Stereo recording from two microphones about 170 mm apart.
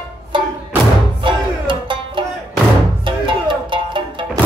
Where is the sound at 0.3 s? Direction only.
30° right (ahead or behind).